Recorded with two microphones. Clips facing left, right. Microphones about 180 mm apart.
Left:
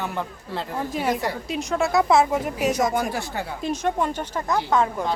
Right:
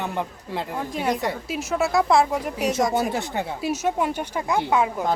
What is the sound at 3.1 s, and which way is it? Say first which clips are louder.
Speech: right 2 dB; 20° right (ahead or behind).